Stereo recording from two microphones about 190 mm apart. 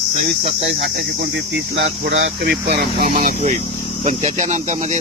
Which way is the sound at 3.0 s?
40° right (ahead or behind).